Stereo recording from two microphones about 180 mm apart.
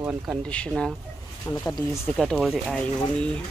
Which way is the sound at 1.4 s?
15° left (ahead or behind).